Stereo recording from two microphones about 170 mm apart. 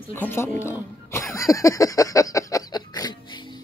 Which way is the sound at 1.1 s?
15° left (ahead or behind).